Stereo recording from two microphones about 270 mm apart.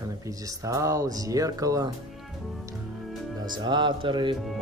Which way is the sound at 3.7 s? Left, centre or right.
Centre.